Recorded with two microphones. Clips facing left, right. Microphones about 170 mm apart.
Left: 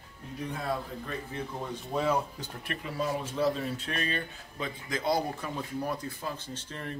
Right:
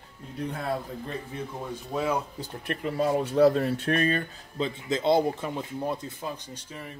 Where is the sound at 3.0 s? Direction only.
65° right (ahead or behind); by 4.2 s 50° right (ahead or behind).